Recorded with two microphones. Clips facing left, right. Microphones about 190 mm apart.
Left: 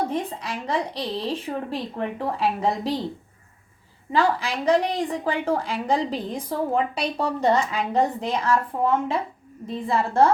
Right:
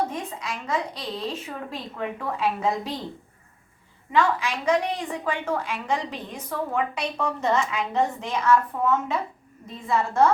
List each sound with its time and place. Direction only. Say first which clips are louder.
0.1 s a woman's voice: left 4 dB; 30° left (ahead or behind)
4.1 s a woman's voice: left 1 dB; 35° left (ahead or behind)